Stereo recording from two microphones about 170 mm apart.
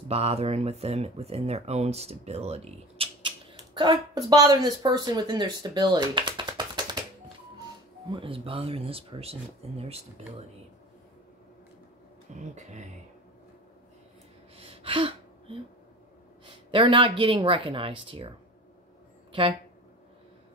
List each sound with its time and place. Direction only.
0.1 s speech: 35° right (ahead or behind)
8.1 s speech: 30° right (ahead or behind)
12.4 s speech: 45° right (ahead or behind)
14.6 s gasp: 35° right (ahead or behind)
16.4 s speech: 30° right (ahead or behind)